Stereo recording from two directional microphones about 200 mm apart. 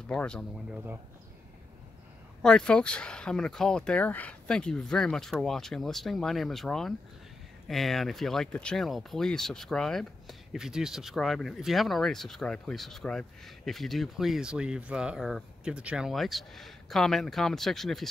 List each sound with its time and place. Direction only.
0.1 s speech: 5° left (ahead or behind)
2.4 s speech: 5° left (ahead or behind)